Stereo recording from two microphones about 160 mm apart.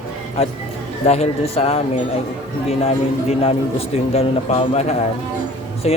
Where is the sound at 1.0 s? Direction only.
40° left (ahead or behind).